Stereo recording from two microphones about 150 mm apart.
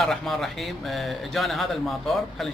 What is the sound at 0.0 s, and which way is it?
Speech, centre (ahead or behind).